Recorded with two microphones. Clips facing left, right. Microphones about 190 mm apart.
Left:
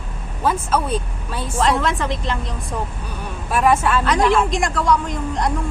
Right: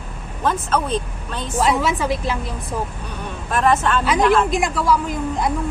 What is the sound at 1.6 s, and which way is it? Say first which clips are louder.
Speech: even; 5° right (ahead or behind).